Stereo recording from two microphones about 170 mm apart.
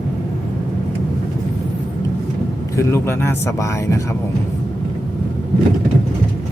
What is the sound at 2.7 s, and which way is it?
Speech, 15° left (ahead or behind).